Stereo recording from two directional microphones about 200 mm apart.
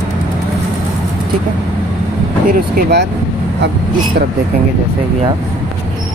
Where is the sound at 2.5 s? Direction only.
50° right (ahead or behind).